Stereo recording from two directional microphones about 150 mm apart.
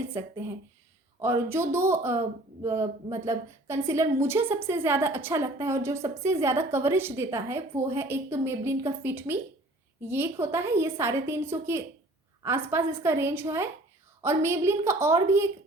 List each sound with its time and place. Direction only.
0.1 s a woman's voice: 15° right (ahead or behind)